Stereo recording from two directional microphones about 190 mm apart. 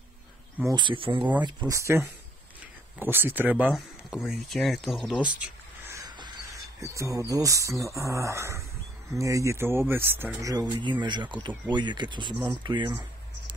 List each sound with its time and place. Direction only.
0.7 s speech: 25° right (ahead or behind)
1.7 s speech: 15° right (ahead or behind)
5.9 s a sound: 20° right (ahead or behind)
7.0 s speech: 15° right (ahead or behind)